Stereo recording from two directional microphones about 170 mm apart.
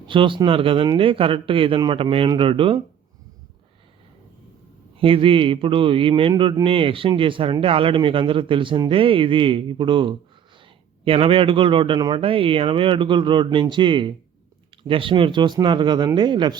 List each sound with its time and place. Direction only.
0.1 s a man's voice: 30° right (ahead or behind)
4.9 s a man's voice: 30° right (ahead or behind)